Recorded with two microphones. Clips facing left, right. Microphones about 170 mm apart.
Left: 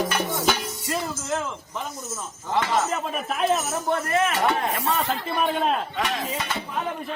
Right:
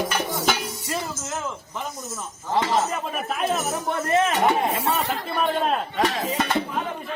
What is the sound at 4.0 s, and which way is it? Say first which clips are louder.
Music: right 5 dB; 25° right (ahead or behind).